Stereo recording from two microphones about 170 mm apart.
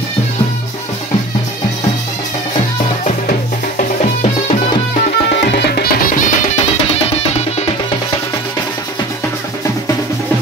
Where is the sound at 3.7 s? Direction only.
40° left (ahead or behind).